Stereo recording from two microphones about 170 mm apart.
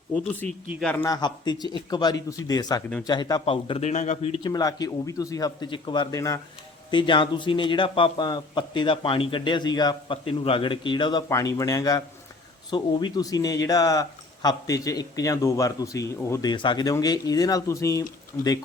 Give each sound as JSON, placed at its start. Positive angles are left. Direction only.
{"t": 0.4, "sound": "a man's voice", "side_deg": 5}
{"t": 1.0, "sound": "a man's voice", "side_deg": 25}